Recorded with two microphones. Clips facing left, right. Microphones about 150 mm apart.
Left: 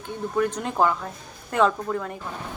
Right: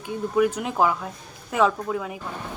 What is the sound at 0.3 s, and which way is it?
Speech, 10° right (ahead or behind).